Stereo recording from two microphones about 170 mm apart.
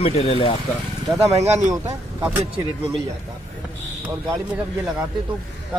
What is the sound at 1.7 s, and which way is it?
Speech, 15° right (ahead or behind).